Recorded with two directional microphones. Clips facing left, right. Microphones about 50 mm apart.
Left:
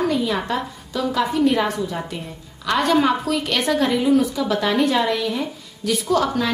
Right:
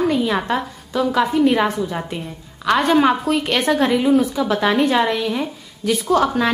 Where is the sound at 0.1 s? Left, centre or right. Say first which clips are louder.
Right 2 dB; right.